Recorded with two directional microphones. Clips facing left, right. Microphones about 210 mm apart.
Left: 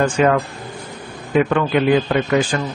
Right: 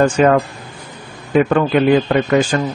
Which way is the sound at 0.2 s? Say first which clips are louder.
Right 3 dB; 40° right (ahead or behind).